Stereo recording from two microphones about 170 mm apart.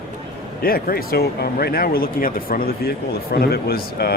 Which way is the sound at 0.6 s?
60° left (ahead or behind).